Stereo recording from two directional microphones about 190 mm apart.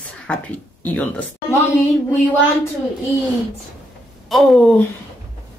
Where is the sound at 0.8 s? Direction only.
10° left (ahead or behind).